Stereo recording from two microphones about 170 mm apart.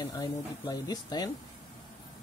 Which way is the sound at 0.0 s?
20° left (ahead or behind).